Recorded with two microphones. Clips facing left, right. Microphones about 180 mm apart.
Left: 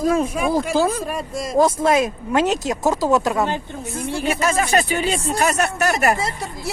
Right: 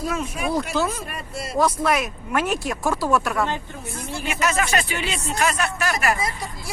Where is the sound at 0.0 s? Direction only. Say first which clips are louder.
Left 7 dB; 40° left (ahead or behind); by 3.6 s 20° left (ahead or behind).